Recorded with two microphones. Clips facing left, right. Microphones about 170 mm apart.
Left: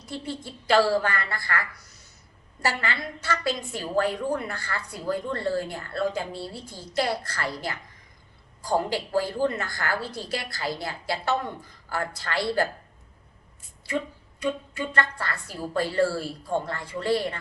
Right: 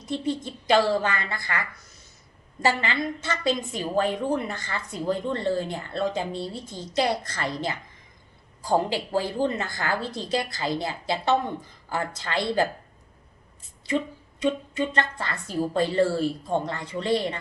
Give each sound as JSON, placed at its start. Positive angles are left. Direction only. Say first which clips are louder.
{"t": 0.0, "sound": "a woman's voice", "louder": "right 6 dB", "side_deg": -20}
{"t": 8.9, "sound": "a woman's voice", "louder": "even", "side_deg": -20}
{"t": 14.7, "sound": "a woman's voice", "louder": "right 2 dB", "side_deg": -20}